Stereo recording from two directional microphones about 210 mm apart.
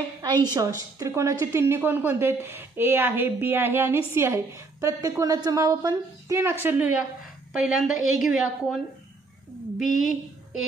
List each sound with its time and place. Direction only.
0.2 s a woman's voice: 20° right (ahead or behind); by 10.0 s centre (ahead or behind)